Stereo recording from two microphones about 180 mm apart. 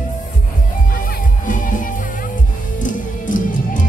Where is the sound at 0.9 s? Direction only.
50° left (ahead or behind).